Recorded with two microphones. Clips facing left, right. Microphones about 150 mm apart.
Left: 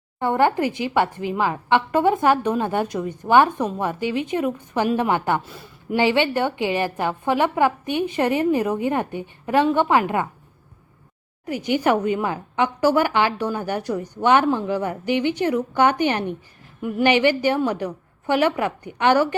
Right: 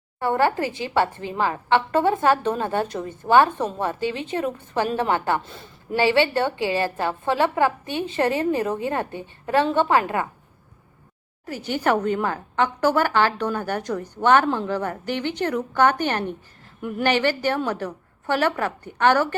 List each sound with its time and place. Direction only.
0.2 s a woman's voice: 20° left (ahead or behind)
11.4 s a woman's voice: 15° left (ahead or behind)